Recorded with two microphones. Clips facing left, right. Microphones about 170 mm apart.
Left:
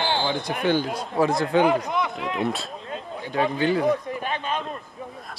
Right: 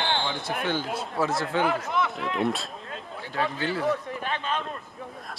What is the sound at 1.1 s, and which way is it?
Speech, 15° left (ahead or behind).